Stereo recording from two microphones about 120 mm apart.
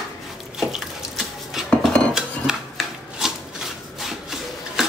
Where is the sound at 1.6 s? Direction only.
5° left (ahead or behind).